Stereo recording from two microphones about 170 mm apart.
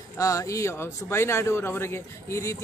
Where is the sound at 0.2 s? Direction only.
20° left (ahead or behind).